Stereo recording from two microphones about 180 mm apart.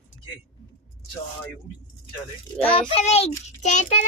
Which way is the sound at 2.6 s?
35° left (ahead or behind).